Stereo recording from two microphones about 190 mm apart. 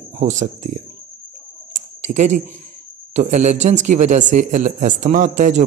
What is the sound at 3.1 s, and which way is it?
A man's voice, 40° right (ahead or behind).